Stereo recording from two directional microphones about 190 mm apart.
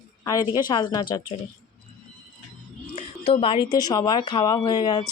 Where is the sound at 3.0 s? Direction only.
30° left (ahead or behind).